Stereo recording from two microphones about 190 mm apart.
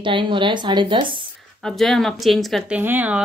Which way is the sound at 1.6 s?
Centre (ahead or behind).